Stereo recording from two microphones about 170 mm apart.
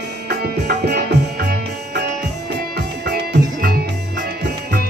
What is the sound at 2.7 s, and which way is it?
Music, 75° right (ahead or behind).